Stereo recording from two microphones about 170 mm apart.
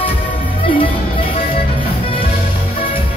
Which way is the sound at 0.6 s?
30° left (ahead or behind).